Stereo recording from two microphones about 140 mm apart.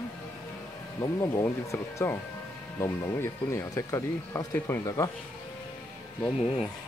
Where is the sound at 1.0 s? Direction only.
25° left (ahead or behind).